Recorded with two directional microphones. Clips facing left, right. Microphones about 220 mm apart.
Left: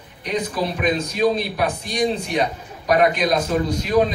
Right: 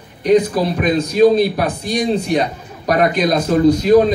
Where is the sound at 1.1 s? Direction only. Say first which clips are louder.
Right 8 dB; 40° right (ahead or behind).